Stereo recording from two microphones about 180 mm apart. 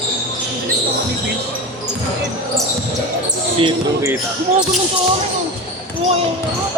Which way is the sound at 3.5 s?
25° right (ahead or behind).